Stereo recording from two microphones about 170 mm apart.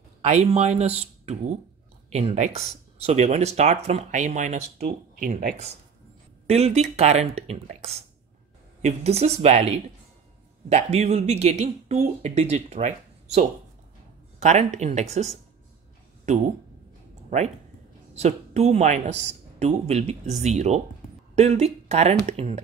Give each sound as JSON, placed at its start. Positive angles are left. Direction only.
{"t": 0.2, "sound": "speech", "side_deg": -40}
{"t": 6.4, "sound": "speech", "side_deg": -40}
{"t": 18.1, "sound": "speech", "side_deg": -40}